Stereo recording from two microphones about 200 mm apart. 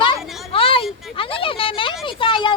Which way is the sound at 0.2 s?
Centre (ahead or behind).